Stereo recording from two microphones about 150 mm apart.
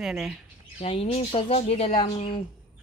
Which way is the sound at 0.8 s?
40° left (ahead or behind).